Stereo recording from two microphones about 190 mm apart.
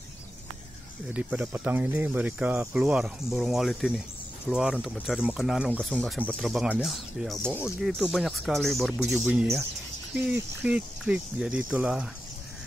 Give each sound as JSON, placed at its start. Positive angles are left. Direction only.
{"t": 1.0, "sound": "speech", "side_deg": -5}